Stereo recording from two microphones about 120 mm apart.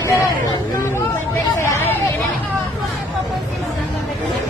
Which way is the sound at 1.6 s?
25° left (ahead or behind).